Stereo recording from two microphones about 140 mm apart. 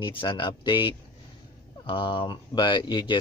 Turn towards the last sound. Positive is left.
turn(degrees=35)  # may be behind; listen again after turning